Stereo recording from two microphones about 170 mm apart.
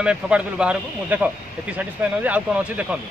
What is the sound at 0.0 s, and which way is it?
Speech, 5° right (ahead or behind).